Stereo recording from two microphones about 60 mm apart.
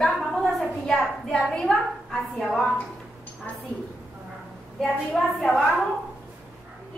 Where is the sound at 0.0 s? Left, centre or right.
Centre.